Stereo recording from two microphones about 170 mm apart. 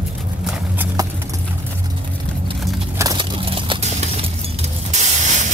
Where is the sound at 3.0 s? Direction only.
20° right (ahead or behind).